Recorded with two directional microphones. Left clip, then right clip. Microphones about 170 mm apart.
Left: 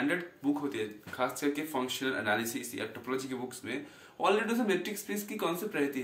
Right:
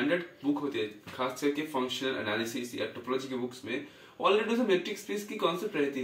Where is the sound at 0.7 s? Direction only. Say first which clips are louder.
Right 2 dB; 25° left (ahead or behind).